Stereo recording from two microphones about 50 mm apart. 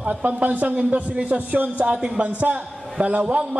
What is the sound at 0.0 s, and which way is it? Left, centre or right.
A man's voice, right.